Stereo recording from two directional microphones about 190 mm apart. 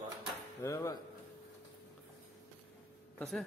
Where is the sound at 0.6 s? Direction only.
15° left (ahead or behind).